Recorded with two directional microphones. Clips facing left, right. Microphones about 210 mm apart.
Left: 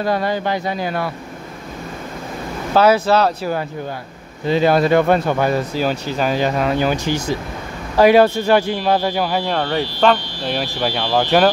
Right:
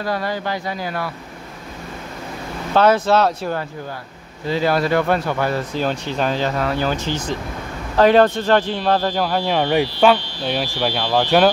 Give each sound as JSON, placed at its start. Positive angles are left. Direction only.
{"t": 0.0, "sound": "speech", "side_deg": 20}
{"t": 2.7, "sound": "speech", "side_deg": 5}
{"t": 4.5, "sound": "speech", "side_deg": 20}
{"t": 9.5, "sound": "speech", "side_deg": -10}